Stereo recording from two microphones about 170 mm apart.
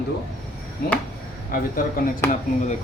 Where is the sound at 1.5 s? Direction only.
60° left (ahead or behind).